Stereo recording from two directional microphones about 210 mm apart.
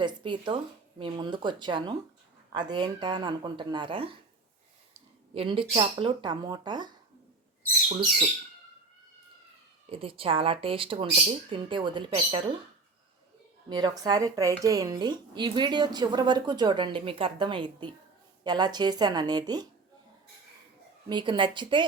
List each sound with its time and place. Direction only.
0.0 s a woman's voice: 20° right (ahead or behind)
5.3 s a woman's voice: 25° right (ahead or behind)
9.9 s a woman's voice: 25° right (ahead or behind)
13.7 s a woman's voice: 20° right (ahead or behind)
21.1 s a woman's voice: 20° right (ahead or behind)